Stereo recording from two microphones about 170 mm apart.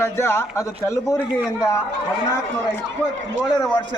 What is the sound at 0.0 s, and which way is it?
A man's voice, 15° left (ahead or behind).